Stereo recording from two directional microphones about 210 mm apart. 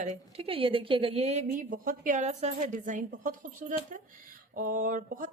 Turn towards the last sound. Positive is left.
turn(degrees=-40)  # may be behind; listen again after turning